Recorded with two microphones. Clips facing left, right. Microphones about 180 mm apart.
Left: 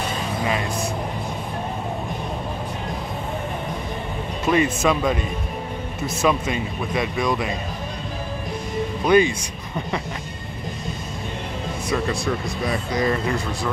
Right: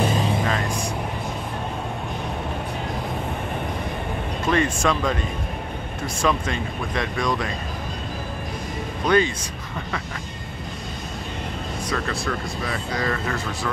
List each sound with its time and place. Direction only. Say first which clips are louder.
4.5 s speech: left 2 dB; 10° left (ahead or behind)
6.2 s speech: left 2 dB; 10° left (ahead or behind)
9.0 s speech: left 3 dB; 10° left (ahead or behind)
11.9 s speech: left 4 dB; 15° left (ahead or behind)